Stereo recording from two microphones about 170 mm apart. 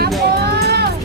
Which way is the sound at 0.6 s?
70° right (ahead or behind).